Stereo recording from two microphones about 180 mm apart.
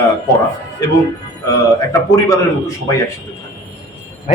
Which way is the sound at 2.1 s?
20° left (ahead or behind).